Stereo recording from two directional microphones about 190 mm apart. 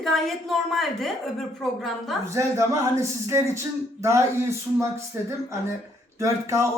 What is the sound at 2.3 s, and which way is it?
Speech, 15° right (ahead or behind).